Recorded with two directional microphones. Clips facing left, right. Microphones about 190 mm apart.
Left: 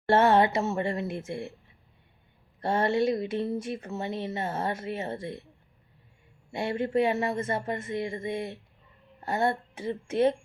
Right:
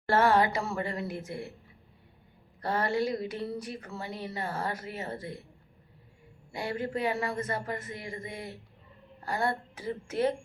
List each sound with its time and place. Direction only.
0.1 s speech: 25° left (ahead or behind)
2.6 s speech: 25° left (ahead or behind)
6.5 s speech: 25° left (ahead or behind)